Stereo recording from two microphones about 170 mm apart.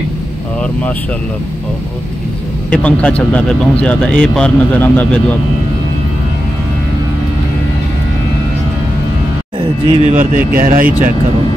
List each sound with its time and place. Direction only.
2.7 s speech: 5° left (ahead or behind)
9.6 s speech: 40° right (ahead or behind); by 10.9 s 55° right (ahead or behind)